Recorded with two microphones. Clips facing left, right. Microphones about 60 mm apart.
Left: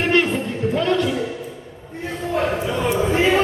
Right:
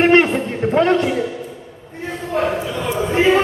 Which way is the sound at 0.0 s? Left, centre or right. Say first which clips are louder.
Right 5 dB; right.